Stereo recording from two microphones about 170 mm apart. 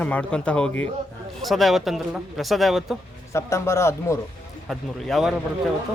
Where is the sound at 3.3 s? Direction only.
15° left (ahead or behind).